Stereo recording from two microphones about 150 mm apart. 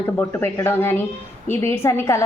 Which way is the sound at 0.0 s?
15° left (ahead or behind).